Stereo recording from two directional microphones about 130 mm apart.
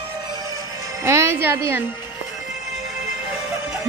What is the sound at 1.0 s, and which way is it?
Speech, 20° right (ahead or behind).